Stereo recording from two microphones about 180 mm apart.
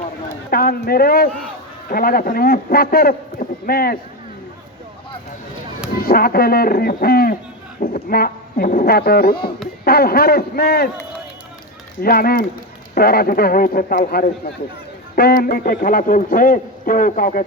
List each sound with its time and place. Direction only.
0.5 s a man's voice: 55° left (ahead or behind)
6.0 s speech: 55° left (ahead or behind)
12.0 s a man's voice: 55° left (ahead or behind)